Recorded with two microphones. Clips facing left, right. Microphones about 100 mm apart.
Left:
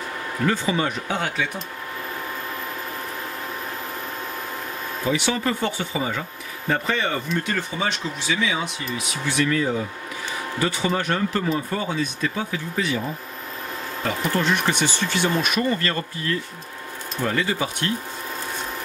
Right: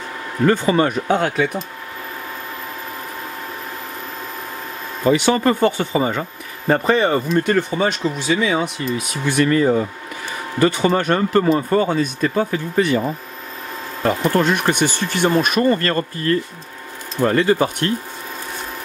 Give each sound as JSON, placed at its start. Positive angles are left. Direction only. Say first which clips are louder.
{"t": 0.5, "sound": "speech", "louder": "right 8 dB", "side_deg": -55}
{"t": 5.0, "sound": "speech", "louder": "right 8 dB", "side_deg": -50}
{"t": 14.0, "sound": "speech", "louder": "right 6 dB", "side_deg": -50}